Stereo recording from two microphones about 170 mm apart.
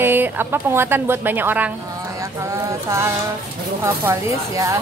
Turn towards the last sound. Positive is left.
turn(degrees=-20)  # may be behind; listen again after turning